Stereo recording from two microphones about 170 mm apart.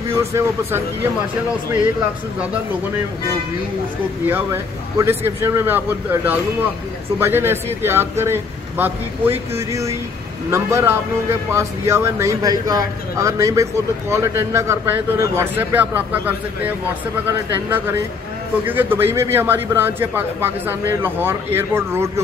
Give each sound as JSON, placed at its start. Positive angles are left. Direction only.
{"t": 0.3, "sound": "speech", "side_deg": -15}
{"t": 4.3, "sound": "speech", "side_deg": -15}